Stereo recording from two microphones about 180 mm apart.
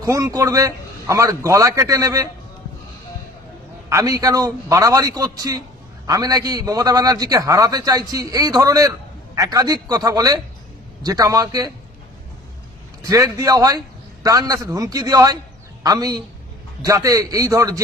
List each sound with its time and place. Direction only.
0.0 s a man's voice: 15° right (ahead or behind)
3.8 s a man's voice: 15° right (ahead or behind)
13.0 s a man's voice: 20° right (ahead or behind)